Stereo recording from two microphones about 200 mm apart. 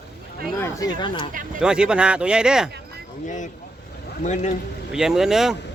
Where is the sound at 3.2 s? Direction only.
40° left (ahead or behind).